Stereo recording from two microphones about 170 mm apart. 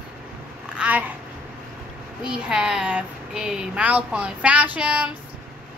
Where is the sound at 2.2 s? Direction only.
5° right (ahead or behind).